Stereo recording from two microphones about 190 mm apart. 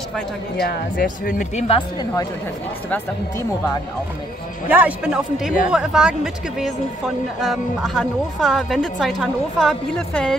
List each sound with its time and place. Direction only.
0.7 s speech: 45° left (ahead or behind)
1.8 s speech: 20° left (ahead or behind)
4.6 s speech: 10° right (ahead or behind)